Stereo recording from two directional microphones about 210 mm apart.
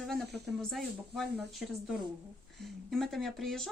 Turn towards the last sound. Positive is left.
turn(degrees=0)  # may be behind; listen again after turning